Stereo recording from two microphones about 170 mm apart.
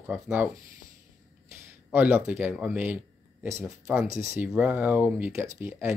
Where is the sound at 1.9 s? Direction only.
10° right (ahead or behind).